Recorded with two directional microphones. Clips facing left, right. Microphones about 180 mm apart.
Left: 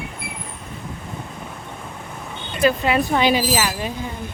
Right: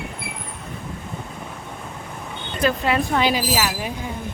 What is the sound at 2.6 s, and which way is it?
Speech, 5° left (ahead or behind).